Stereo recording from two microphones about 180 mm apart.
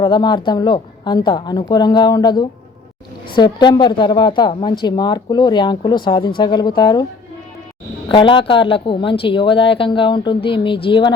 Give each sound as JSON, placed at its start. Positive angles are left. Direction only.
{"t": 0.0, "sound": "speech", "side_deg": 25}
{"t": 8.1, "sound": "speech", "side_deg": 25}